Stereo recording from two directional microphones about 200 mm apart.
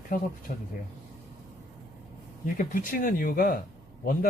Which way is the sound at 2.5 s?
40° left (ahead or behind).